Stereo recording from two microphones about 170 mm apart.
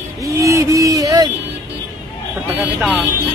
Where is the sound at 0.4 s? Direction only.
20° right (ahead or behind).